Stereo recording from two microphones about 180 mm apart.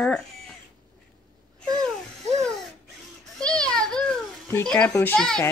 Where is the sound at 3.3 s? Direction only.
5° left (ahead or behind).